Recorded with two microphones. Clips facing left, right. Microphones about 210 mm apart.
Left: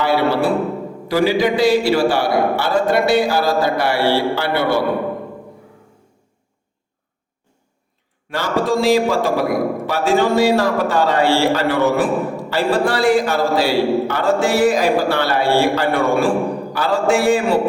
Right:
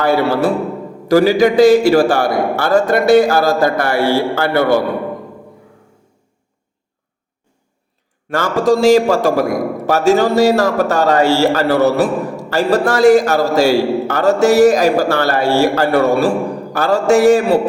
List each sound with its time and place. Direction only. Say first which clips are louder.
0.0 s a man's voice: right 3 dB; 45° right (ahead or behind)
8.3 s a man's voice: right 5 dB; 50° right (ahead or behind)